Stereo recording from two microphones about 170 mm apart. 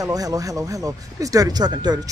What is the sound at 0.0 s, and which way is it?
Speech, 20° right (ahead or behind).